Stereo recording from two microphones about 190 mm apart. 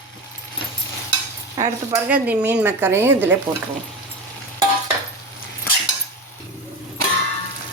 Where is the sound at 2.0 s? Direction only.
5° right (ahead or behind).